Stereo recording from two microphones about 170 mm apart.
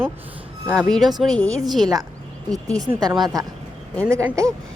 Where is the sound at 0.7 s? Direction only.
5° left (ahead or behind).